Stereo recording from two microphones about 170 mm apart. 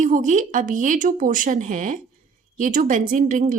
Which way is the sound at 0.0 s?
45° right (ahead or behind).